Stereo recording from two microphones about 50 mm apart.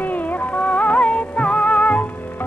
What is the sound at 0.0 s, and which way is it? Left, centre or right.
Music, left.